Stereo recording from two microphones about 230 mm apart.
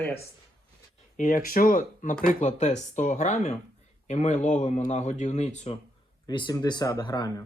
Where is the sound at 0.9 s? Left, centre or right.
Left.